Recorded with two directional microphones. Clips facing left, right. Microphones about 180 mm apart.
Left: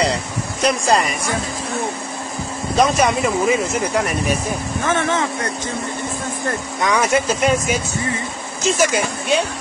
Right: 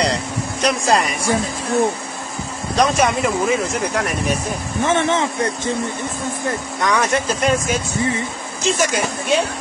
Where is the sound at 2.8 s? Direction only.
Centre (ahead or behind).